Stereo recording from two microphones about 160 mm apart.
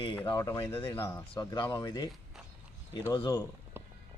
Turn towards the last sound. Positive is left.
turn(degrees=-15)  # may be behind; listen again after turning